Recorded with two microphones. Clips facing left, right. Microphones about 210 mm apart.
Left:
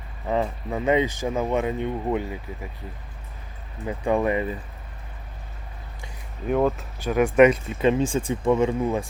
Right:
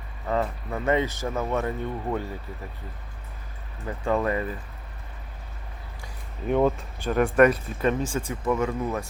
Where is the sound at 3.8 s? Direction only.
15° left (ahead or behind).